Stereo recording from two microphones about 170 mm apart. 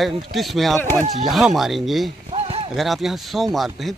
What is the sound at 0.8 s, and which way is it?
Speech, 10° left (ahead or behind).